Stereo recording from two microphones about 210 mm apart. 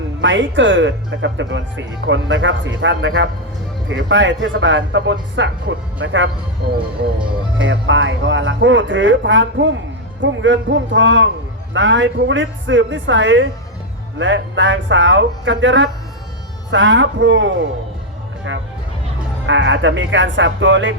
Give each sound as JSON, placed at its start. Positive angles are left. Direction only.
{"t": 0.2, "sound": "speech", "side_deg": -60}
{"t": 7.6, "sound": "speech", "side_deg": -60}
{"t": 19.5, "sound": "speech", "side_deg": -60}